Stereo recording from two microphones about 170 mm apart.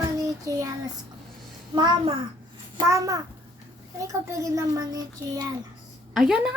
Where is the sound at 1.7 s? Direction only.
25° right (ahead or behind).